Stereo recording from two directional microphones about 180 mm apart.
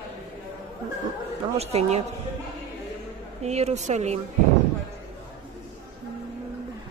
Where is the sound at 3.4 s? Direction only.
35° right (ahead or behind).